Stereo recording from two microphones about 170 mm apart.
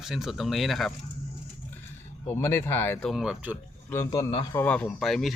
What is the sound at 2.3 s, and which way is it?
Speech, 15° left (ahead or behind).